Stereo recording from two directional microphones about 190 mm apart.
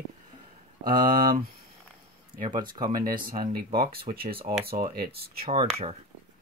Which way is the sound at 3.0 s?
50° right (ahead or behind).